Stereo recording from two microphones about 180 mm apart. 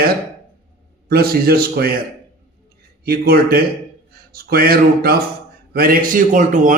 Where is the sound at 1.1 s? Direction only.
60° right (ahead or behind).